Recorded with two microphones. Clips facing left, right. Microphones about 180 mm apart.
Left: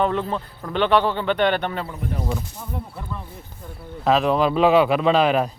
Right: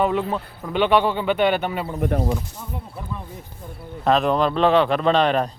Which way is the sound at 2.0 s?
60° right (ahead or behind).